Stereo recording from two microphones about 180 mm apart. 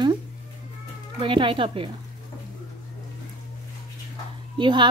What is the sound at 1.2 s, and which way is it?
Speech, 30° right (ahead or behind).